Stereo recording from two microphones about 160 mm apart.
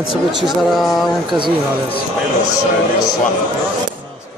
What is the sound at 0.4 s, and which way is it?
Speech, centre (ahead or behind).